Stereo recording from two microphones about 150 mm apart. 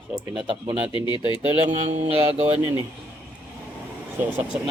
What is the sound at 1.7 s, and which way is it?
Mantra, 45° right (ahead or behind).